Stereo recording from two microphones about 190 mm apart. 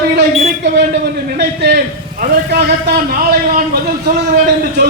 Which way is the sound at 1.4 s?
60° right (ahead or behind).